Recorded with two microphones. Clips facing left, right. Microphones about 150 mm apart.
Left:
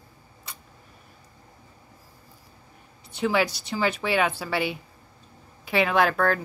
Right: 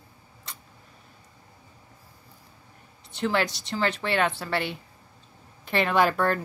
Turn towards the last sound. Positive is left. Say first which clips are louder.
# left 1 dB
turn(degrees=0)  # may be behind; listen again after turning